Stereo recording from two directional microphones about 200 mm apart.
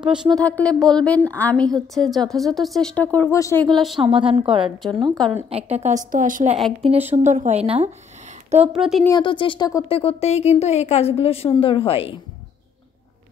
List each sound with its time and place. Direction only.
0.3 s speech: 5° left (ahead or behind)
3.7 s speech: centre (ahead or behind)
4.0 s a woman's voice: 25° right (ahead or behind)
8.7 s speech: centre (ahead or behind)
9.0 s speech: 20° left (ahead or behind)